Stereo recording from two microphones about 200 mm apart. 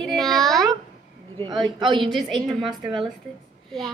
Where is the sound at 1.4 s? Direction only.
20° right (ahead or behind).